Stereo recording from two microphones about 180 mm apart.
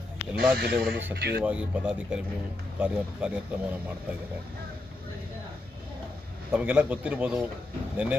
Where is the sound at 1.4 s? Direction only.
5° right (ahead or behind).